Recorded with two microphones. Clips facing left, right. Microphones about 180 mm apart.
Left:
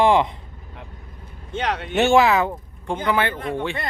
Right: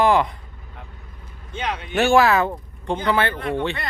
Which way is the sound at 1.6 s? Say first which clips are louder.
Left 2 dB; 75° left (ahead or behind).